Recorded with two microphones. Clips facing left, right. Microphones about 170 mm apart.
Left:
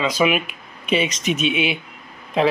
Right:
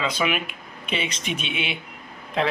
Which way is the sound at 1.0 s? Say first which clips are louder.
Left 8 dB; 30° right (ahead or behind).